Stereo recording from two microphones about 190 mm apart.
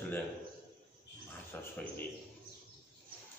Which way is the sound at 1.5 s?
10° left (ahead or behind).